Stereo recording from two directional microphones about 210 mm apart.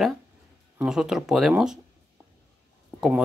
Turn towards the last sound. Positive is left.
turn(degrees=-5)  # may be behind; listen again after turning